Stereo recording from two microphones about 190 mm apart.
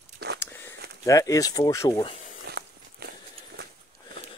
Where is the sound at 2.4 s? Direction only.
60° right (ahead or behind).